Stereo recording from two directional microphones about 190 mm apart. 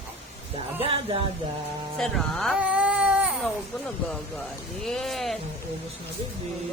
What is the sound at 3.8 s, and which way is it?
A woman's voice, 5° left (ahead or behind).